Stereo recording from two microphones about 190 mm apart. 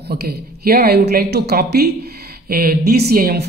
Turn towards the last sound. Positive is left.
turn(degrees=-55)  # may be behind; listen again after turning